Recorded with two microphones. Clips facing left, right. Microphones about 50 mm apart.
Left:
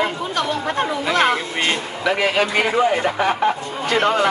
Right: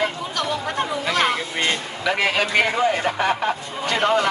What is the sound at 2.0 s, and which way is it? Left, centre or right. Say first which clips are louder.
Speech: left 2 dB; centre.